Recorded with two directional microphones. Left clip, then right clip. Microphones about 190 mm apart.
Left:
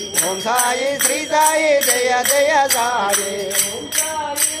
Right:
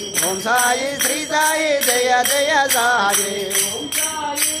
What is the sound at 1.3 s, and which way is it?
Jingle bell, 25° right (ahead or behind).